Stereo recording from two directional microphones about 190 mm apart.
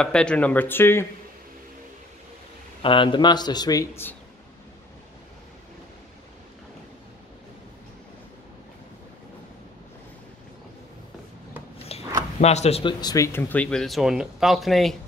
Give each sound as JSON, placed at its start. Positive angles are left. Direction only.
{"t": 0.0, "sound": "speech", "side_deg": 5}
{"t": 2.8, "sound": "speech", "side_deg": 25}
{"t": 11.9, "sound": "a sound", "side_deg": 30}
{"t": 12.4, "sound": "speech", "side_deg": 35}
{"t": 13.0, "sound": "speech", "side_deg": 15}